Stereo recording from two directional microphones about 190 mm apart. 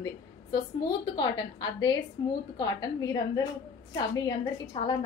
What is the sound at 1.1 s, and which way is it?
A woman's voice, 25° left (ahead or behind).